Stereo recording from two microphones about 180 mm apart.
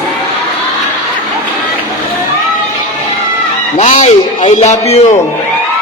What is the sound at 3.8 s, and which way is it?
A man's voice, 40° left (ahead or behind).